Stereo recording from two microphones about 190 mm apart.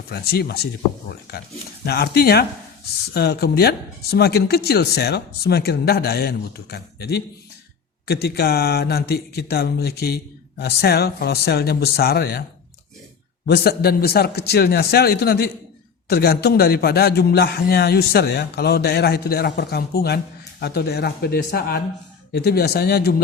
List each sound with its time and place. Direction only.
0.1 s a man's voice: 55° left (ahead or behind)
1.8 s a man's voice: 55° left (ahead or behind)
13.4 s a man's voice: 55° left (ahead or behind)